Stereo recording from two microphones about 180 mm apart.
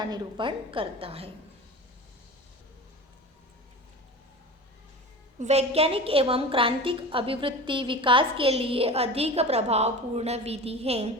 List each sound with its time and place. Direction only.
0.0 s a woman's voice: 25° right (ahead or behind)
5.4 s a woman's voice: 35° right (ahead or behind)